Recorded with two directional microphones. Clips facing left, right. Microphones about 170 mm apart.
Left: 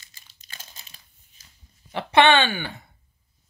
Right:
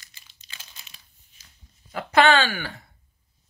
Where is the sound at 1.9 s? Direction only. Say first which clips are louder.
Left 1 dB; 25° left (ahead or behind).